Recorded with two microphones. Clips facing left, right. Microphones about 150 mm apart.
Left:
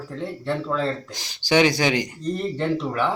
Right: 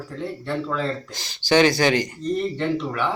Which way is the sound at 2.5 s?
35° left (ahead or behind).